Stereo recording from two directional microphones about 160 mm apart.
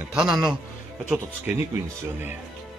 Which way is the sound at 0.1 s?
5° right (ahead or behind).